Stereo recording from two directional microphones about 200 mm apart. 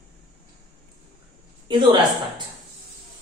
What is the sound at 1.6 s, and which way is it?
Speech, 25° right (ahead or behind).